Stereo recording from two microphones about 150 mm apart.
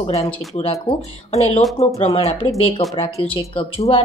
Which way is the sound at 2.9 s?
35° left (ahead or behind).